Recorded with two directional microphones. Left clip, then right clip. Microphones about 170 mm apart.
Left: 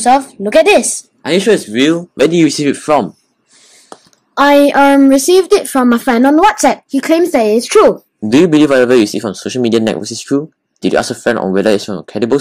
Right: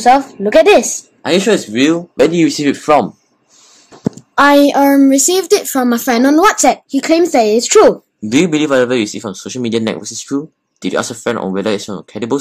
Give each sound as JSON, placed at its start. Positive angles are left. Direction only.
{"t": 0.0, "sound": "speech", "side_deg": 15}
{"t": 4.4, "sound": "a woman's voice", "side_deg": 30}
{"t": 6.2, "sound": "speech", "side_deg": 15}
{"t": 8.3, "sound": "speech", "side_deg": 25}